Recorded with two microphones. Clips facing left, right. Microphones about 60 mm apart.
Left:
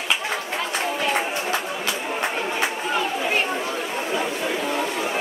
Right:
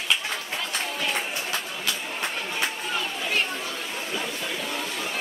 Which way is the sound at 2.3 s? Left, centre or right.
Left.